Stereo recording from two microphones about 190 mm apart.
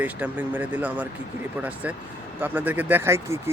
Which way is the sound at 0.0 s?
10° right (ahead or behind).